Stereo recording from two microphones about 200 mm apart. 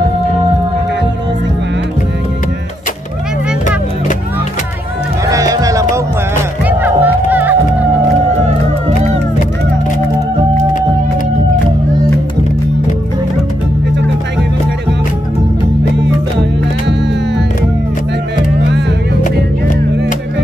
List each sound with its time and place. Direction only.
5.2 s music: 15° right (ahead or behind)
18.6 s music: 60° right (ahead or behind)